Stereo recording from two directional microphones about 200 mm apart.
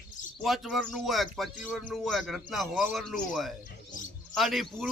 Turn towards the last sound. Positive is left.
turn(degrees=0)  # may be behind; listen again after turning